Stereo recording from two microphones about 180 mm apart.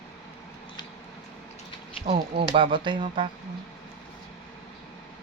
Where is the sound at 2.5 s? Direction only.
30° right (ahead or behind).